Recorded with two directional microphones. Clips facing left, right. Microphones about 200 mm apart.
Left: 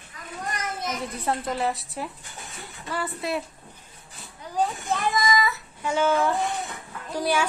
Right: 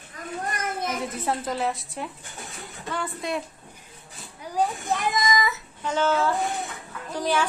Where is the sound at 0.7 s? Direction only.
55° right (ahead or behind).